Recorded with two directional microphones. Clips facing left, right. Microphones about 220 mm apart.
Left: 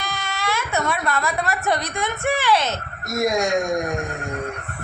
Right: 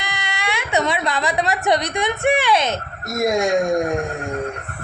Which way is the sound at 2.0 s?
15° right (ahead or behind).